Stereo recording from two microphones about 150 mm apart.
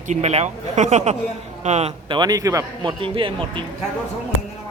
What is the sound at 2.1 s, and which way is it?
Speech, 25° right (ahead or behind).